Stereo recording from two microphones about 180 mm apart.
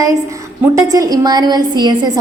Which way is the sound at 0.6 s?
20° right (ahead or behind).